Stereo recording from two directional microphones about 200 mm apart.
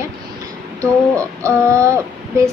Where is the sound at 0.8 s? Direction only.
15° right (ahead or behind).